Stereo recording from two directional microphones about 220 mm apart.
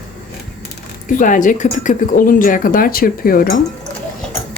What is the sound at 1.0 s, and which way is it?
Speech, 35° left (ahead or behind).